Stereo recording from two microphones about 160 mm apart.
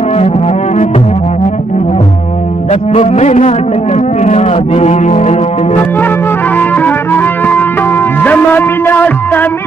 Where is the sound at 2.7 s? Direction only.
45° left (ahead or behind).